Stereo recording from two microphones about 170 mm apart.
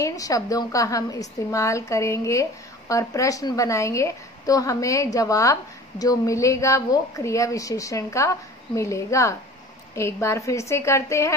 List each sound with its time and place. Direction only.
0.0 s a woman's voice: 20° left (ahead or behind)